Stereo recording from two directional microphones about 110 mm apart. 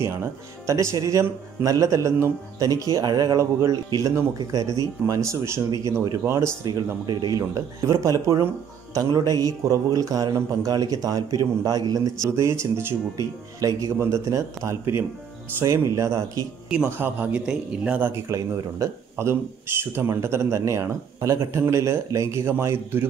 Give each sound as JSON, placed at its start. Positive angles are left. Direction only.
{"t": 0.0, "sound": "speech", "side_deg": -25}
{"t": 6.6, "sound": "speech", "side_deg": -35}
{"t": 12.3, "sound": "speech", "side_deg": -25}
{"t": 16.7, "sound": "speech", "side_deg": -15}
{"t": 18.1, "sound": "speech", "side_deg": -25}